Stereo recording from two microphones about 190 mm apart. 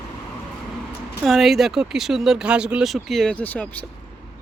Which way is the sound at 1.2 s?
Centre (ahead or behind).